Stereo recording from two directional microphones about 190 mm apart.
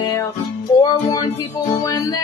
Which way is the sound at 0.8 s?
20° left (ahead or behind).